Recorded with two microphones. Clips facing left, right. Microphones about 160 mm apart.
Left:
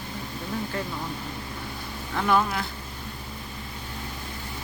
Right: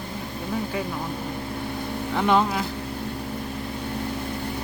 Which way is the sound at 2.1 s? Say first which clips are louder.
Right 2 dB; 20° right (ahead or behind).